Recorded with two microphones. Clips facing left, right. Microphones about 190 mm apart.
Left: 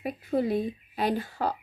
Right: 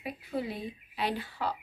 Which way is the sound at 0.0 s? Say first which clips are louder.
Left 7 dB; 45° left (ahead or behind).